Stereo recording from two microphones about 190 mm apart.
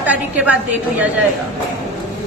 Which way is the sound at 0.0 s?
10° right (ahead or behind).